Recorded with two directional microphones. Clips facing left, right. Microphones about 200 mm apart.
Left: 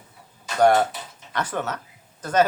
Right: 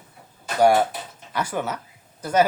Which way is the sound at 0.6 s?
10° right (ahead or behind).